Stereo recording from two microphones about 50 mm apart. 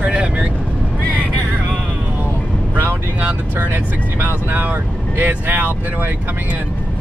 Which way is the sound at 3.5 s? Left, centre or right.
Right.